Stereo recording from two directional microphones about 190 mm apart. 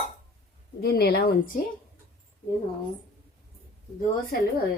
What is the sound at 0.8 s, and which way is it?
Speech, 55° left (ahead or behind).